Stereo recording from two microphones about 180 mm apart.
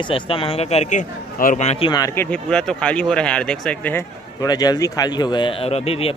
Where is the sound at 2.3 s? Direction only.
5° left (ahead or behind).